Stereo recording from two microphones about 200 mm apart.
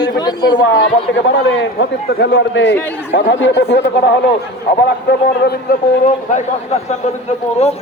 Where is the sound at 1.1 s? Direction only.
60° left (ahead or behind).